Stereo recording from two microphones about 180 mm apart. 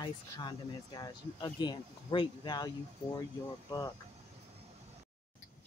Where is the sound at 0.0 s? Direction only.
25° left (ahead or behind).